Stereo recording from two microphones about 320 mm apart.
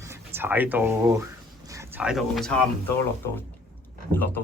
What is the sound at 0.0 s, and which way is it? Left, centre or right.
Speech, centre.